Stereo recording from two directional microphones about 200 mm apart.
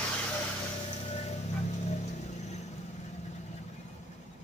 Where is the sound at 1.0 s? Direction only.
30° left (ahead or behind).